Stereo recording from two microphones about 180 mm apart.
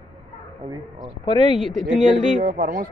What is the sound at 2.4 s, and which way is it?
Speech, 50° right (ahead or behind).